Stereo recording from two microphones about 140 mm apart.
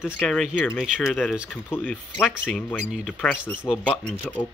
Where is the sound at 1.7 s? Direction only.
10° left (ahead or behind).